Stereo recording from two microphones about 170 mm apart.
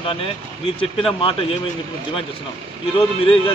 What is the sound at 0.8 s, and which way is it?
Speech, 30° left (ahead or behind).